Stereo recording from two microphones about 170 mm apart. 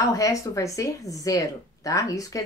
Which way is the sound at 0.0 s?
20° left (ahead or behind).